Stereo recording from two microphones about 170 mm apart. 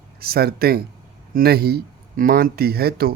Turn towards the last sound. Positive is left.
turn(degrees=-65)  # may be behind; listen again after turning